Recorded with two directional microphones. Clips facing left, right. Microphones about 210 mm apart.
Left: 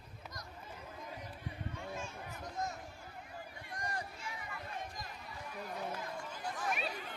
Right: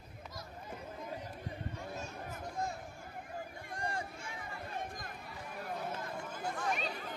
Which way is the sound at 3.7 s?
30° right (ahead or behind).